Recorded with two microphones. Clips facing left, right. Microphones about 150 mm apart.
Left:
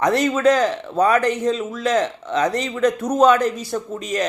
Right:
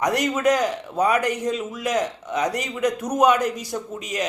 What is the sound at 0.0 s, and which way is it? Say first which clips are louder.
A man's voice: left 4 dB; 15° right (ahead or behind).